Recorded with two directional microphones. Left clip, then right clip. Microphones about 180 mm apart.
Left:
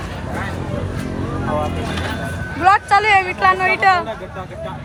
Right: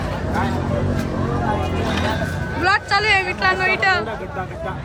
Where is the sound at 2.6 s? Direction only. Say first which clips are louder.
Left 5 dB; 20° left (ahead or behind).